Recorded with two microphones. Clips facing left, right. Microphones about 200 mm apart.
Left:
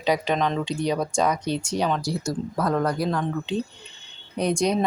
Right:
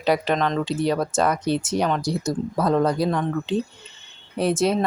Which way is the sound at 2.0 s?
20° right (ahead or behind).